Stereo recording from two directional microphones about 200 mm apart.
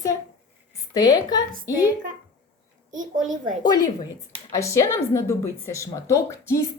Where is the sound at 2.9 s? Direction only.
40° right (ahead or behind).